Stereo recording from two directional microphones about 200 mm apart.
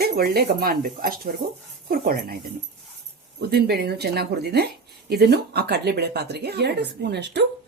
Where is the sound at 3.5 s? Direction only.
50° right (ahead or behind).